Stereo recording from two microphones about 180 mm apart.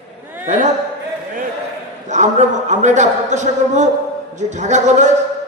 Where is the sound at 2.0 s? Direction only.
40° right (ahead or behind).